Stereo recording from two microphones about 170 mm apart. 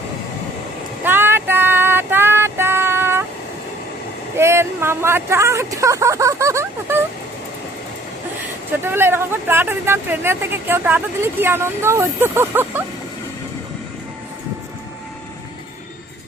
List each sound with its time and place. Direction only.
1.0 s female singing: 15° right (ahead or behind)
4.4 s speech: 15° right (ahead or behind)
8.8 s speech: 15° right (ahead or behind)